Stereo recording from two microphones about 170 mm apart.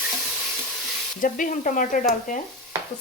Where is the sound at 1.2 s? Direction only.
50° left (ahead or behind).